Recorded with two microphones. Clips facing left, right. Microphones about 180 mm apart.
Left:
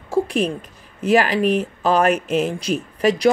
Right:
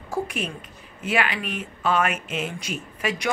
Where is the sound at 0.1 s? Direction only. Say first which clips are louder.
Left 9 dB; 35° left (ahead or behind).